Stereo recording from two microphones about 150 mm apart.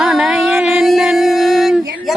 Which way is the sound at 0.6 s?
Centre (ahead or behind).